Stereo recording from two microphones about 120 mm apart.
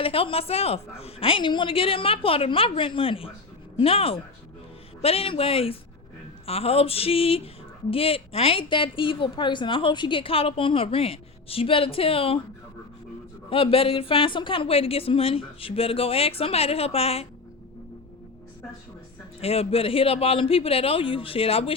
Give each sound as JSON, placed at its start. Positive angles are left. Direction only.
{"t": 0.0, "sound": "speech", "side_deg": 50}
{"t": 13.5, "sound": "speech", "side_deg": 50}
{"t": 19.4, "sound": "speech", "side_deg": 55}